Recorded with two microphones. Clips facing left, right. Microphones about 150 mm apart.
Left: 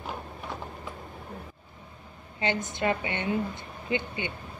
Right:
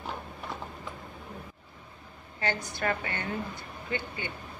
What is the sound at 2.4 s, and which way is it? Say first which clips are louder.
A woman's voice: left 3 dB; 20° left (ahead or behind).